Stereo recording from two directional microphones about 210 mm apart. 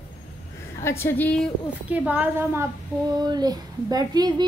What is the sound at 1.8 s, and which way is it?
A child's voice, 5° right (ahead or behind).